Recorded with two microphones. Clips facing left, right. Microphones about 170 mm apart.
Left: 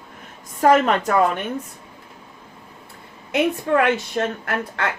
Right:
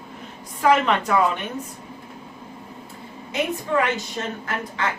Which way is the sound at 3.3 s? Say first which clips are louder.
Left 4 dB; 65° left (ahead or behind).